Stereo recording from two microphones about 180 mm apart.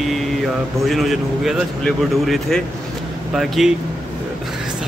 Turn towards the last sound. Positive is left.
turn(degrees=0)  # may be behind; listen again after turning